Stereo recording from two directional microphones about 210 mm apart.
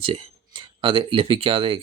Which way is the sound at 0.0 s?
25° right (ahead or behind).